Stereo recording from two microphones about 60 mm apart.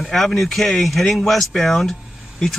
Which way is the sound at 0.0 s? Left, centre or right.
Centre.